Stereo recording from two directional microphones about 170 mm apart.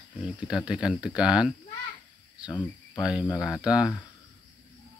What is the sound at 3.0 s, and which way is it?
Speech, 5° right (ahead or behind).